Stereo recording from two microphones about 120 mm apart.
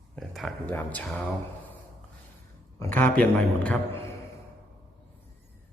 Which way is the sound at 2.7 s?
25° left (ahead or behind).